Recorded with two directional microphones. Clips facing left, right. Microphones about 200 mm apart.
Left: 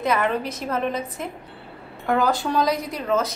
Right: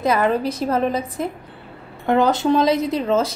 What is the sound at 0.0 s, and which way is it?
A woman's voice, 35° right (ahead or behind).